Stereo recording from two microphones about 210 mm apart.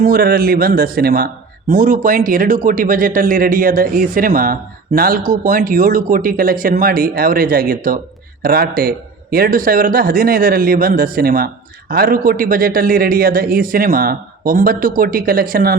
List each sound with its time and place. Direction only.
0.0 s a man's voice: 45° right (ahead or behind)